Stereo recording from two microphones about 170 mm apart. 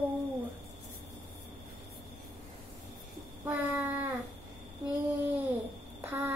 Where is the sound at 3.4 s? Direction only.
15° right (ahead or behind).